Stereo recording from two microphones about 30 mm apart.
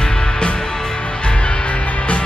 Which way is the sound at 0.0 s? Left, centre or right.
Left.